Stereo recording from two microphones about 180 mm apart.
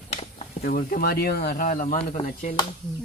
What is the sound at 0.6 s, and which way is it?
Speech, 55° left (ahead or behind).